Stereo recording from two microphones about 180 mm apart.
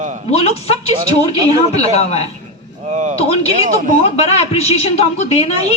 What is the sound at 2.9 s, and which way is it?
Speech, 40° right (ahead or behind).